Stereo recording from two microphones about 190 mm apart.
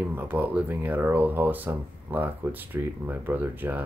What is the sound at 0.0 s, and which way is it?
Speech, 10° right (ahead or behind).